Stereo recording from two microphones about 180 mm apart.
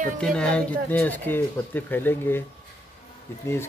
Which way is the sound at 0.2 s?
5° left (ahead or behind).